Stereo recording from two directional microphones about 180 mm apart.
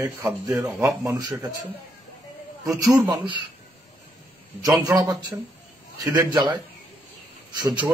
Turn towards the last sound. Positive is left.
turn(degrees=-25)  # may be behind; listen again after turning